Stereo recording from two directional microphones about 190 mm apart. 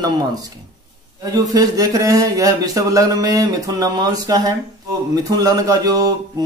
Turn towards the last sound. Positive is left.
turn(degrees=-20)  # may be behind; listen again after turning